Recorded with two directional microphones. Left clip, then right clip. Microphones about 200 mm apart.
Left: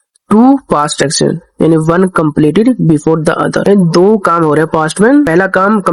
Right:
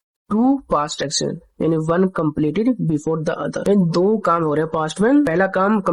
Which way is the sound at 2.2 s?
30° left (ahead or behind).